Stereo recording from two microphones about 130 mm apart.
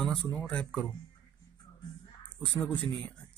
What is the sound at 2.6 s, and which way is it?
Speech, 15° left (ahead or behind).